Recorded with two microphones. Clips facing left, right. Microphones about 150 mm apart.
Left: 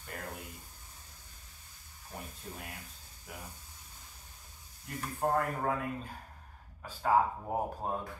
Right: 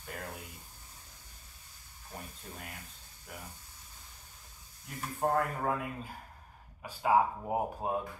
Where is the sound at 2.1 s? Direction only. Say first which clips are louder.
Left 1 dB; centre (ahead or behind).